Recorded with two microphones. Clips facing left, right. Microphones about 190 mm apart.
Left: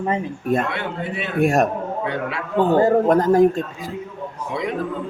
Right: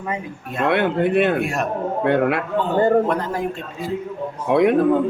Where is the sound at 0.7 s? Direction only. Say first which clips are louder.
Right 9 dB; 60° right (ahead or behind).